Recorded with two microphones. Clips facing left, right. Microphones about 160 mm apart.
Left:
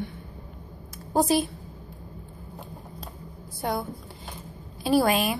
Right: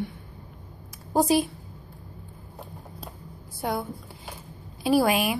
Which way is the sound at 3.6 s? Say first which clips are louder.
Even; 10° right (ahead or behind).